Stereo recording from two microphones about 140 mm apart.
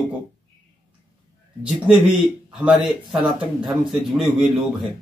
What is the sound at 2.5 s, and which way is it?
Speech, 5° right (ahead or behind).